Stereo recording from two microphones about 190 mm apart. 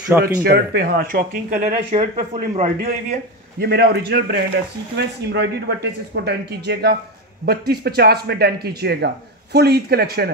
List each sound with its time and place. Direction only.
0.2 s speech: 55° right (ahead or behind); by 2.7 s 35° right (ahead or behind)
2.8 s speech: 50° right (ahead or behind)